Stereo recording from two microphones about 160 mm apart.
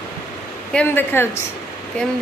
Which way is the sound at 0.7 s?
10° left (ahead or behind).